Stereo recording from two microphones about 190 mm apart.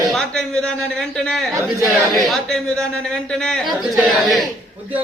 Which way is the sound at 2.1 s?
Centre (ahead or behind).